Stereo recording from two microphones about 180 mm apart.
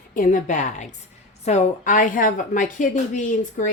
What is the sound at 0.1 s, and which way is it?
Speech, 45° left (ahead or behind).